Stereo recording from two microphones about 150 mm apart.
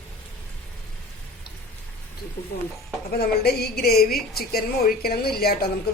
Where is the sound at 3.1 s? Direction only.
90° left.